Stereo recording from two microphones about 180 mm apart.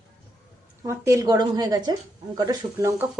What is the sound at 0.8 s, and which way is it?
A woman's voice, 15° right (ahead or behind).